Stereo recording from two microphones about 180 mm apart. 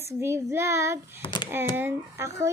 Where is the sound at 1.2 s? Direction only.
30° left (ahead or behind).